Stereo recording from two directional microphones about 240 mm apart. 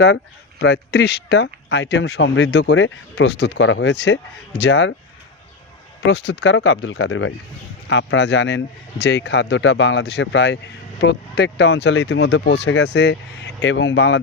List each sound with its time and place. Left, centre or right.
0.6 s a man's voice: left
6.1 s a man's voice: left